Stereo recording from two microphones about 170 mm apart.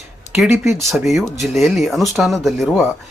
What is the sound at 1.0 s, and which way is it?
Speech, centre (ahead or behind).